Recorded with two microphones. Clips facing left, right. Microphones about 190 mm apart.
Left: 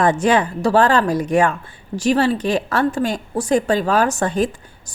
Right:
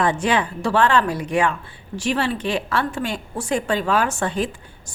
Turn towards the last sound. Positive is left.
turn(degrees=45)  # may be behind; listen again after turning